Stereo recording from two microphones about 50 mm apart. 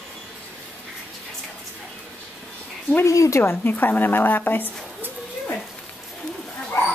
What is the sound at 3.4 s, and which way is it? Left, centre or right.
A woman's voice, left.